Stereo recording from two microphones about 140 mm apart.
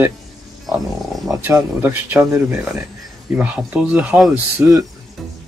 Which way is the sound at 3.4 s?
10° right (ahead or behind).